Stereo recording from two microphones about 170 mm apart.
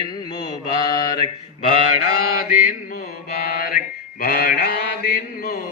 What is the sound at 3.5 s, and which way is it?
Mantra, 55° left (ahead or behind).